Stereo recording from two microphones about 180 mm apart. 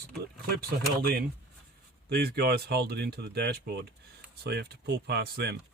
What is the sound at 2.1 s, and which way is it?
Speech, 65° right (ahead or behind).